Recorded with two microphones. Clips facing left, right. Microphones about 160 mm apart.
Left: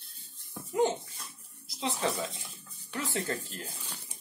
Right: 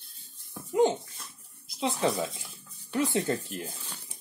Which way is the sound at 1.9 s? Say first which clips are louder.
Right 4 dB; 10° right (ahead or behind).